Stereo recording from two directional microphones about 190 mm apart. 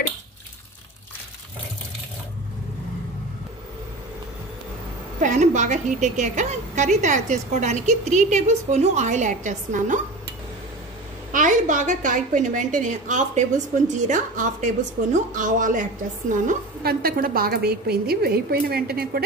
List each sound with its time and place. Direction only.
5.2 s a woman's voice: 40° right (ahead or behind)
11.3 s a woman's voice: 40° right (ahead or behind)